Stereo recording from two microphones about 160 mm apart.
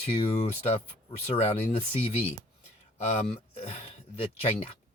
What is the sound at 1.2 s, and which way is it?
Speech, 40° left (ahead or behind).